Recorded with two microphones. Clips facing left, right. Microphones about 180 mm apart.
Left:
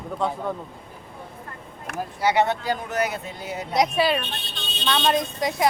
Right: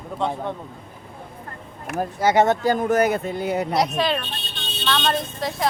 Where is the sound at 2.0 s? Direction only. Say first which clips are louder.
Right 3 dB; 45° right (ahead or behind).